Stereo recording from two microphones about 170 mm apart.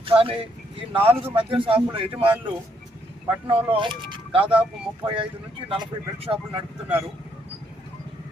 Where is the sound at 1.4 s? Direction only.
30° right (ahead or behind).